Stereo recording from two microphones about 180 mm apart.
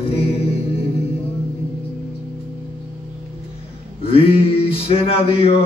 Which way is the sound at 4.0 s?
30° left (ahead or behind).